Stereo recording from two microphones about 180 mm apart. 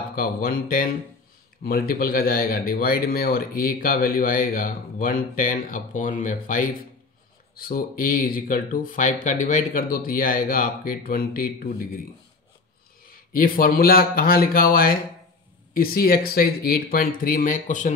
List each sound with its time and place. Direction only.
0.1 s speech: 55° left (ahead or behind)
13.1 s speech: 50° left (ahead or behind)